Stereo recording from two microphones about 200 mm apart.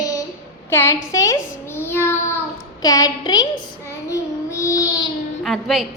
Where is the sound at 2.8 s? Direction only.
20° left (ahead or behind).